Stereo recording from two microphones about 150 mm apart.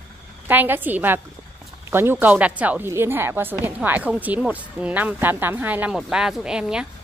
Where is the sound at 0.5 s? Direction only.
10° right (ahead or behind).